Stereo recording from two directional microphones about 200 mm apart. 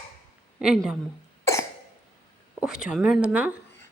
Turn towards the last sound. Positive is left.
turn(degrees=-5)  # may be behind; listen again after turning